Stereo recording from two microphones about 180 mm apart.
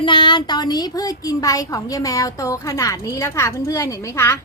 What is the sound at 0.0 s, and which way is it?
A woman's voice, 25° left (ahead or behind).